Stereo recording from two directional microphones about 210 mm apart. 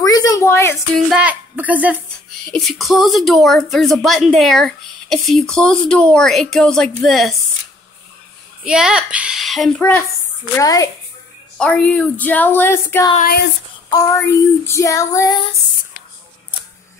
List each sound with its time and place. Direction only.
0.0 s a sound: 15° left (ahead or behind)
0.9 s a woman's voice: 5° right (ahead or behind)
8.6 s a woman's voice: 5° right (ahead or behind); by 10.9 s 15° left (ahead or behind)
11.5 s a woman's voice: 5° left (ahead or behind)